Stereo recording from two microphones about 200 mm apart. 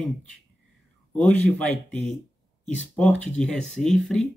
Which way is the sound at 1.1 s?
5° left (ahead or behind).